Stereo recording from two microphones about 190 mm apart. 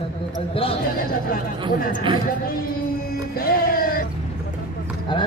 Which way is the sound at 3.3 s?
50° left (ahead or behind).